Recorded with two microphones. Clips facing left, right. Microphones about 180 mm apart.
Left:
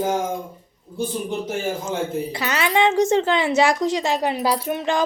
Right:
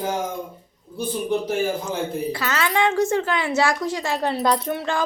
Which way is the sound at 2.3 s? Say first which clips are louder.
Left 4 dB; 15° left (ahead or behind).